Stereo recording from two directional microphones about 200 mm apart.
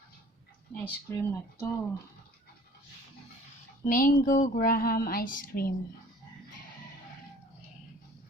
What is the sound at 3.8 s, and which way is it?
Speech, 45° left (ahead or behind).